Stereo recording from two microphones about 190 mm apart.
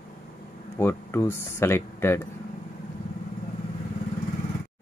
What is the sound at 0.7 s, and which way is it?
Speech, 15° left (ahead or behind).